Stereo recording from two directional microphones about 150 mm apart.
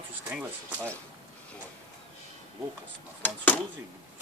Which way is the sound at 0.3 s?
10° right (ahead or behind).